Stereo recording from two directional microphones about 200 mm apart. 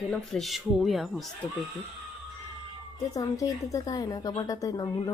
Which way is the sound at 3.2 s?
15° left (ahead or behind).